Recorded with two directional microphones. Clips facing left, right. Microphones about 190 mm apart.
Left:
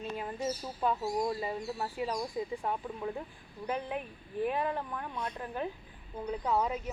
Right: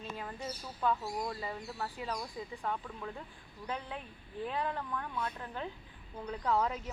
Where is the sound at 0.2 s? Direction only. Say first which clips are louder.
Left 6 dB; 20° left (ahead or behind).